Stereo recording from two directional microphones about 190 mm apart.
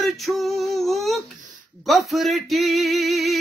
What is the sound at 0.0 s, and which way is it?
Female singing, centre (ahead or behind).